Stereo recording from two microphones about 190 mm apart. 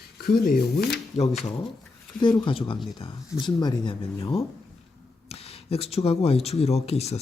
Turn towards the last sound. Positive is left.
turn(degrees=35)  # may be behind; listen again after turning